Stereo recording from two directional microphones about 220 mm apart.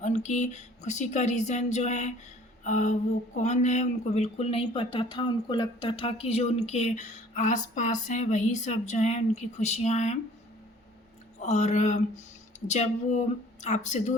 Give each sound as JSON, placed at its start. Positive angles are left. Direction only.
{"t": 0.0, "sound": "speech", "side_deg": 30}
{"t": 11.3, "sound": "speech", "side_deg": 30}